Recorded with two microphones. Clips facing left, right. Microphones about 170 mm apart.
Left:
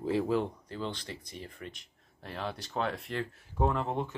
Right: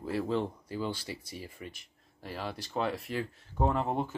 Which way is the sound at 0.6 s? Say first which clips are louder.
Right 2 dB; 10° right (ahead or behind).